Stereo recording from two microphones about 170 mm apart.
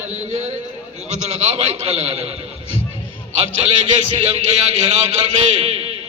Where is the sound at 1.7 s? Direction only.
40° right (ahead or behind).